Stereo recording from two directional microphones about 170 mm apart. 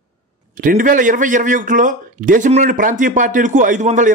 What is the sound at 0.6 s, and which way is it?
A man's voice, 50° right (ahead or behind).